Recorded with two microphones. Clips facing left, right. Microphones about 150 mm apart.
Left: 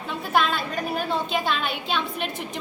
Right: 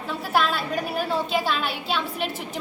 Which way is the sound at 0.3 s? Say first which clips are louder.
Even; 5° right (ahead or behind).